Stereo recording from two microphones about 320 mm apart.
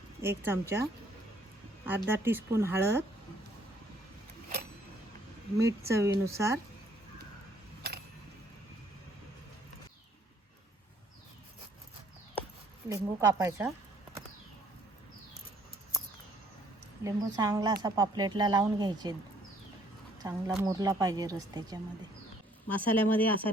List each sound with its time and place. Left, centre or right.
0.2 s a woman's voice: centre
1.8 s a woman's voice: centre
5.5 s a woman's voice: centre
7.8 s a sound: right
12.9 s a woman's voice: centre
17.0 s a woman's voice: centre
20.2 s a woman's voice: centre
22.7 s speech: centre